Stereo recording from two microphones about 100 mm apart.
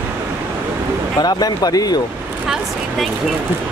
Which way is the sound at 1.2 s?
40° left (ahead or behind).